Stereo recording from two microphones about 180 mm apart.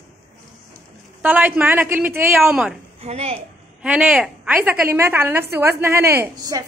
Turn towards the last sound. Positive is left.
turn(degrees=-15)  # may be behind; listen again after turning